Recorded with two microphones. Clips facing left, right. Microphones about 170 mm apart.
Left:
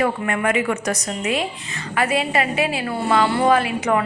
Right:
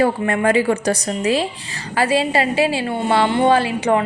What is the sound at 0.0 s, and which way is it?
Speech, 30° right (ahead or behind).